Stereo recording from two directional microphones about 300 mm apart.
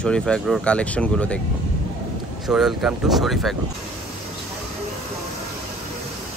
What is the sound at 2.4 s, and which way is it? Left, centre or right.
Speech, centre.